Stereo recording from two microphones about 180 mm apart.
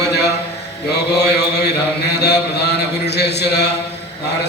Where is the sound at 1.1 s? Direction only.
65° left (ahead or behind).